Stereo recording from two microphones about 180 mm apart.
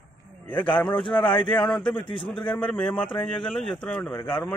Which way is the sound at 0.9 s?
25° left (ahead or behind).